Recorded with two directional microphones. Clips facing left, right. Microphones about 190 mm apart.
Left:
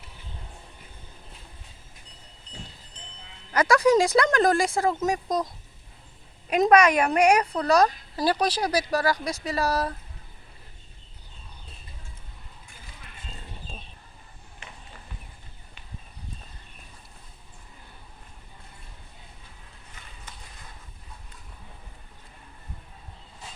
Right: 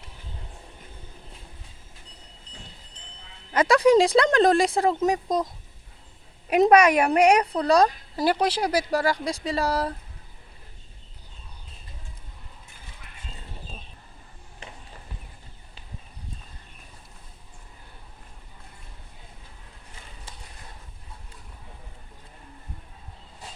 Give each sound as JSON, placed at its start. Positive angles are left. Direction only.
{"t": 3.5, "sound": "speech", "side_deg": -30}
{"t": 6.5, "sound": "speech", "side_deg": -10}
{"t": 7.7, "sound": "speech", "side_deg": -25}
{"t": 14.6, "sound": "a sound", "side_deg": -35}